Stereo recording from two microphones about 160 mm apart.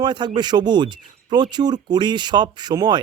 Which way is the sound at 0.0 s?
25° right (ahead or behind).